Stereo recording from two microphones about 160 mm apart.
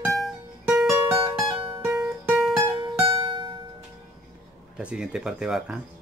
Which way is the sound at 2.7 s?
35° right (ahead or behind).